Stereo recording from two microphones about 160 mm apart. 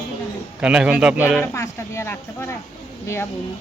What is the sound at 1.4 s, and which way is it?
Speech, 15° left (ahead or behind).